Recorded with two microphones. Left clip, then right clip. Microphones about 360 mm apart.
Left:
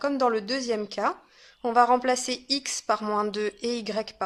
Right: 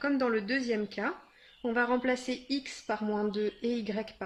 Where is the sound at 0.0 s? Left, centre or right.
Centre.